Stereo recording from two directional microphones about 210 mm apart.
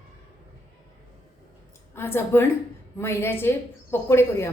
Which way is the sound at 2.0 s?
10° left (ahead or behind).